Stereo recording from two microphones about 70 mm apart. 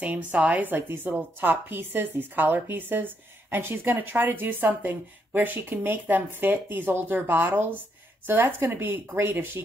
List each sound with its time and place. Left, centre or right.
0.0 s a woman's voice: right